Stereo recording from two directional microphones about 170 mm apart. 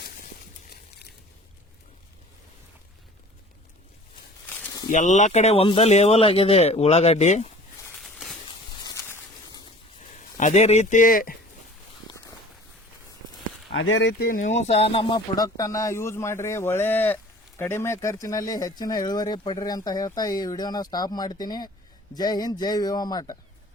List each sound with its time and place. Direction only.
4.4 s snake: 10° left (ahead or behind)
4.9 s speech: 45° left (ahead or behind)
7.9 s a sound: centre (ahead or behind)
8.4 s a sound: 20° left (ahead or behind)
10.0 s speech: 45° left (ahead or behind)
13.7 s speech: 70° left (ahead or behind); by 23.4 s 25° left (ahead or behind)